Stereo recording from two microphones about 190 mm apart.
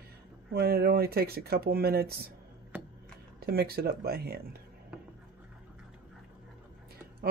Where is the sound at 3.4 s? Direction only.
55° right (ahead or behind).